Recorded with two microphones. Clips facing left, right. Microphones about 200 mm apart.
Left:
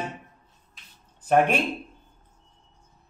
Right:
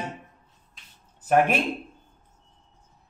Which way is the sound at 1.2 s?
5° right (ahead or behind).